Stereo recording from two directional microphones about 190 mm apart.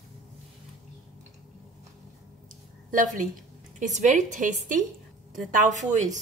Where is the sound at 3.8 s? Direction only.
40° right (ahead or behind).